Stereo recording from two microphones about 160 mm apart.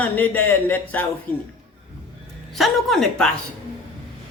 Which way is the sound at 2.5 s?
Centre (ahead or behind).